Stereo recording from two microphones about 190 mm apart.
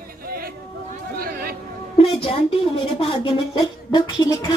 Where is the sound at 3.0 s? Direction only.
25° left (ahead or behind).